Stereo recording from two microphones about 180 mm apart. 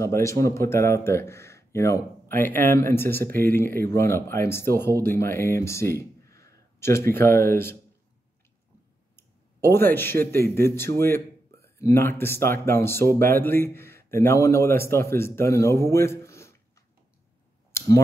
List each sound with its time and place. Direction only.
0.0 s speech: 15° left (ahead or behind)
9.1 s a man's voice: 10° left (ahead or behind)
17.7 s a sound: 15° left (ahead or behind)